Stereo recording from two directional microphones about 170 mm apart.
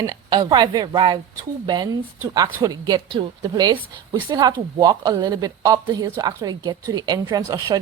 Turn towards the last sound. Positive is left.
turn(degrees=-20)  # may be behind; listen again after turning